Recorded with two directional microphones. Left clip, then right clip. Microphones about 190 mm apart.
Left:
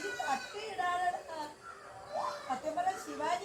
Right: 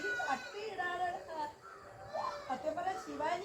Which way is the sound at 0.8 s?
30° left (ahead or behind).